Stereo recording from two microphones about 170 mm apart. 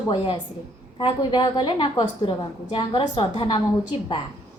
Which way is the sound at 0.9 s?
25° left (ahead or behind).